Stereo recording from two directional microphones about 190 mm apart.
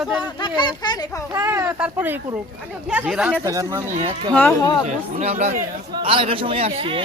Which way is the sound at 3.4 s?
15° right (ahead or behind).